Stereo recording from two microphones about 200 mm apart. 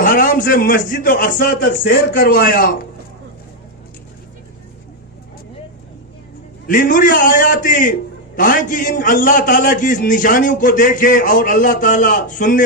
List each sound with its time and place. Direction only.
0.0 s a man's voice: 40° left (ahead or behind)
6.7 s a man's voice: 40° left (ahead or behind)